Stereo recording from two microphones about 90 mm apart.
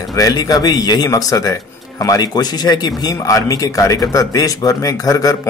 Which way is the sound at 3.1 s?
40° left (ahead or behind).